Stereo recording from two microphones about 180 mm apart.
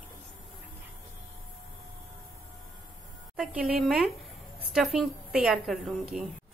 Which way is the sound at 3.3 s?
5° right (ahead or behind).